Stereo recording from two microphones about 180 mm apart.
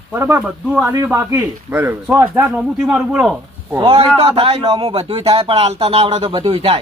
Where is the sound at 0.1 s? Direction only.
10° right (ahead or behind).